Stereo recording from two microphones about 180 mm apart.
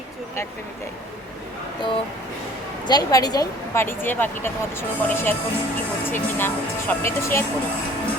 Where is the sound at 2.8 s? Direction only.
20° left (ahead or behind).